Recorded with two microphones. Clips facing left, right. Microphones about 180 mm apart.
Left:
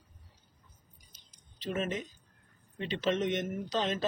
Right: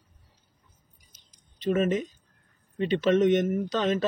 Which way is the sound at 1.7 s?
70° right (ahead or behind).